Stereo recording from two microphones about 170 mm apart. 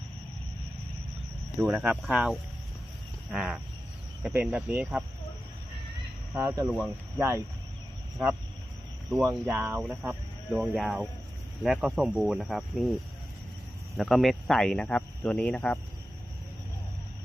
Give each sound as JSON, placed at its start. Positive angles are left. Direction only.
{"t": 1.5, "sound": "speech", "side_deg": -10}
{"t": 3.3, "sound": "a sound", "side_deg": 0}
{"t": 4.2, "sound": "speech", "side_deg": -5}
{"t": 6.3, "sound": "speech", "side_deg": -15}
{"t": 6.7, "sound": "speech", "side_deg": -5}
{"t": 7.2, "sound": "speech", "side_deg": -15}
{"t": 9.5, "sound": "speech", "side_deg": -10}
{"t": 13.9, "sound": "speech", "side_deg": 0}